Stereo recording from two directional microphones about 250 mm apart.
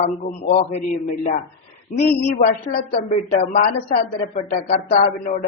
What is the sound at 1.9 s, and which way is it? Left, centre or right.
Speech, left.